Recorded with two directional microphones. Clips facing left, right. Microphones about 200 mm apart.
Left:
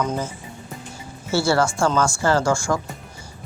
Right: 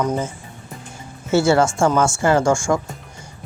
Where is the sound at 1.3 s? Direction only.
20° right (ahead or behind).